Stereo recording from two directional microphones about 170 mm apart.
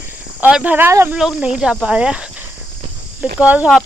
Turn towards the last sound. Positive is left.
turn(degrees=-10)  # may be behind; listen again after turning